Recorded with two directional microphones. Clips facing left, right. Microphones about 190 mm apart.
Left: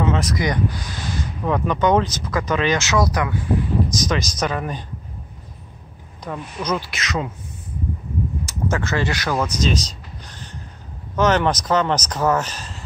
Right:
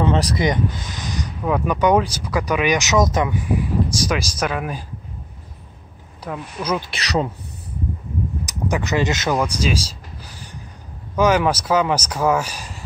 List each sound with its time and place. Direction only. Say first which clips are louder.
0.0 s speech: right 2 dB; 35° right (ahead or behind); by 4.8 s 5° right (ahead or behind)
6.2 s speech: even; 10° right (ahead or behind)
6.9 s speech: right 4 dB; 35° right (ahead or behind)
8.5 s speech: right 2 dB; 15° right (ahead or behind)
9.4 s speech: even; 10° right (ahead or behind)
10.2 s a sound: left 1 dB; 10° right (ahead or behind)
11.1 s speech: right 1 dB; 10° right (ahead or behind)